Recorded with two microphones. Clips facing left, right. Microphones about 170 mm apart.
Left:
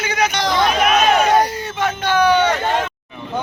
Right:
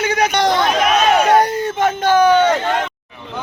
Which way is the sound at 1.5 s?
45° right (ahead or behind).